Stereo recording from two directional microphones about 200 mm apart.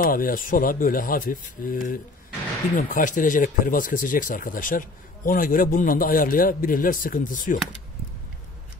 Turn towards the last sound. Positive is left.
turn(degrees=40)  # may be behind; listen again after turning